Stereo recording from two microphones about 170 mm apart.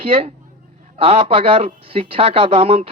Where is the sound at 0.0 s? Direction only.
35° right (ahead or behind).